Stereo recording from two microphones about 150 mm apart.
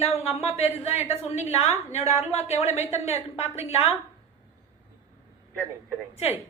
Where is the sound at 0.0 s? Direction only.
45° left (ahead or behind).